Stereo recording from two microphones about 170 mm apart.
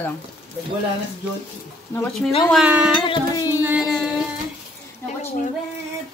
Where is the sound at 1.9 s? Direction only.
15° left (ahead or behind).